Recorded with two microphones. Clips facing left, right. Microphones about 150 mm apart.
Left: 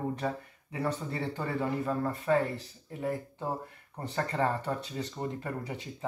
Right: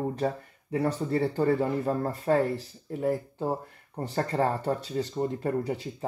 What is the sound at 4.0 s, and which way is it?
Speech, 35° right (ahead or behind).